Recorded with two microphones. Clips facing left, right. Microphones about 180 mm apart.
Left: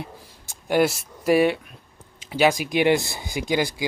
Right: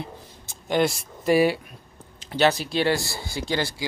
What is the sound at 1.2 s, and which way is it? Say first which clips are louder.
Speech: left 1 dB; centre (ahead or behind).